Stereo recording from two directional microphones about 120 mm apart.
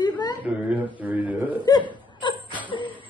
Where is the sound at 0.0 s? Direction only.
35° left (ahead or behind).